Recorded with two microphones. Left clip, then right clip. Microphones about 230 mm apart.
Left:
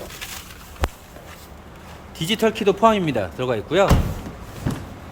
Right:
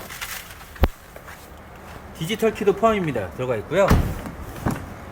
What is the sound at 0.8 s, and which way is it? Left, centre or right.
Walk, centre.